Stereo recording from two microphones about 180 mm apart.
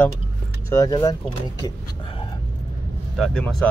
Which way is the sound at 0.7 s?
20° left (ahead or behind).